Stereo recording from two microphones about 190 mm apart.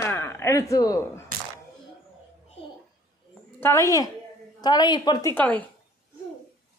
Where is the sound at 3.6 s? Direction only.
15° left (ahead or behind).